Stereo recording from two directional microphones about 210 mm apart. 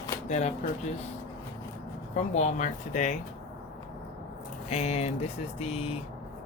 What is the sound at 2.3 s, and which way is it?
Mantra, 35° left (ahead or behind).